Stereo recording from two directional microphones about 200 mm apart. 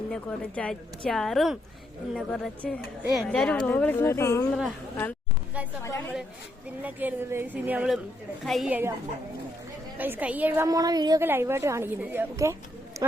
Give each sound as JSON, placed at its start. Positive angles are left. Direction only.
{"t": 0.1, "sound": "speech", "side_deg": 5}
{"t": 5.8, "sound": "a woman's voice", "side_deg": 15}
{"t": 6.8, "sound": "a woman's voice", "side_deg": -10}
{"t": 10.0, "sound": "a woman's voice", "side_deg": -10}